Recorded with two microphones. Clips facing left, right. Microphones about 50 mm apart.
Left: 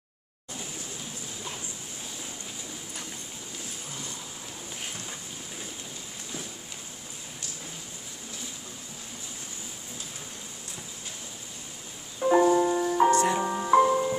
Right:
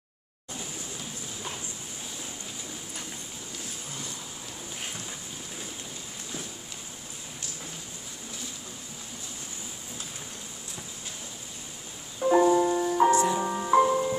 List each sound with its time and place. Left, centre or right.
12.2 s music: centre
13.1 s music: left
13.4 s music: centre